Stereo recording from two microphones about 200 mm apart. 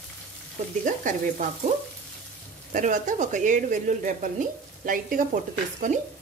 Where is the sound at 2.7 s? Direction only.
40° right (ahead or behind).